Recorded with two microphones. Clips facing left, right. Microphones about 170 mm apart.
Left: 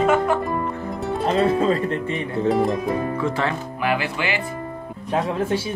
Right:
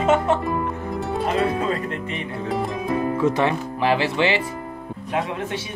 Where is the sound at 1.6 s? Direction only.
30° left (ahead or behind).